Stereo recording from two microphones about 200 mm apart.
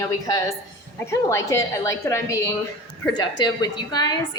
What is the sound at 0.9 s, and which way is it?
A woman's voice, 15° left (ahead or behind).